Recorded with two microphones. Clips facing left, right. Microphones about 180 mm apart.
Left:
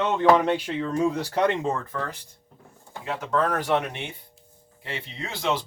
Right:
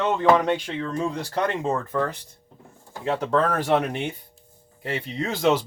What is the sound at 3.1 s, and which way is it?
Speech, 30° right (ahead or behind).